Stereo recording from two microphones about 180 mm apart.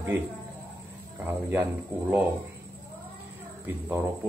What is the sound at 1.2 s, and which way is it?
Speech, 10° right (ahead or behind).